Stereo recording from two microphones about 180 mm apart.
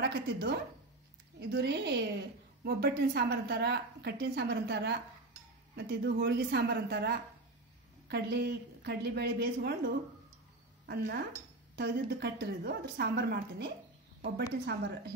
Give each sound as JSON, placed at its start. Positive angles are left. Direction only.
{"t": 0.0, "sound": "a woman's voice", "side_deg": -70}